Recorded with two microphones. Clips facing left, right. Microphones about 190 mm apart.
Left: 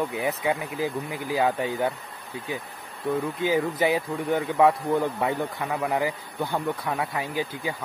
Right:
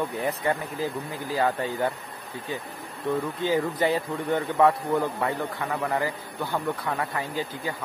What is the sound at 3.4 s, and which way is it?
Speech, 10° left (ahead or behind).